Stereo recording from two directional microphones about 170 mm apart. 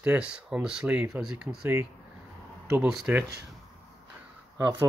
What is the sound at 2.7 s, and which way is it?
Speech, 5° right (ahead or behind).